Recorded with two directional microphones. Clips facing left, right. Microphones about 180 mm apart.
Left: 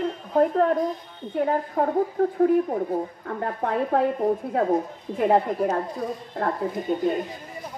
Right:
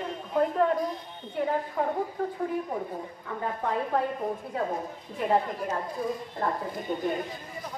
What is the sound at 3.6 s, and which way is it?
Speech, 55° left (ahead or behind).